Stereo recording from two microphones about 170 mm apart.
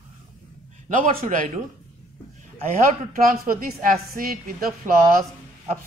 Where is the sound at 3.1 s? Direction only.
55° right (ahead or behind).